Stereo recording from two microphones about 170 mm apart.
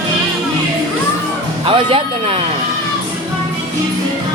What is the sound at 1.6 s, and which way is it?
Speech, 30° right (ahead or behind).